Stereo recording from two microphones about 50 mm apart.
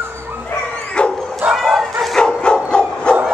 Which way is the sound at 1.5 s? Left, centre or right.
Centre.